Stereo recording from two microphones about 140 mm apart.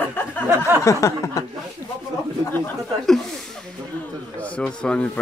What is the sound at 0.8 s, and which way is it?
Speech, 20° left (ahead or behind).